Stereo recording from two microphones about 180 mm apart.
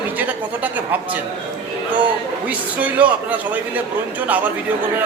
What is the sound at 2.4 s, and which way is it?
A man's voice, 10° right (ahead or behind).